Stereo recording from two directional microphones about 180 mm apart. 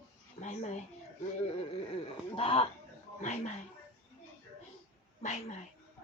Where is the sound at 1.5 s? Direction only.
30° left (ahead or behind).